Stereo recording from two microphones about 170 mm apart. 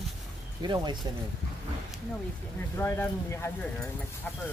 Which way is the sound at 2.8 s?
15° left (ahead or behind).